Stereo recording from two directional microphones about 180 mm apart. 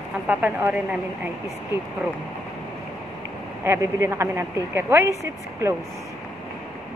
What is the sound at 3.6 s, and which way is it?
A woman's voice, 15° right (ahead or behind).